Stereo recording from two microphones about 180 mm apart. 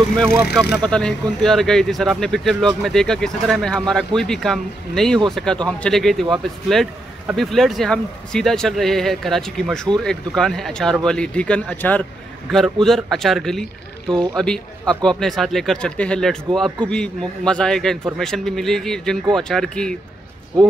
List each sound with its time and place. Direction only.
0.7 s speech: centre (ahead or behind)
14.0 s speech: 25° right (ahead or behind)
14.3 s speech: 5° left (ahead or behind)